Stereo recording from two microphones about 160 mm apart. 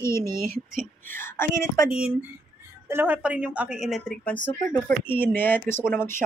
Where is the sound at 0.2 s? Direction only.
65° right (ahead or behind).